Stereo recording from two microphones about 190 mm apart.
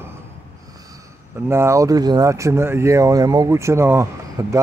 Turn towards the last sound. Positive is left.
turn(degrees=-15)  # may be behind; listen again after turning